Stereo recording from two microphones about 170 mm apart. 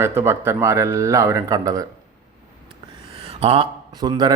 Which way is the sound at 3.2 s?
35° right (ahead or behind).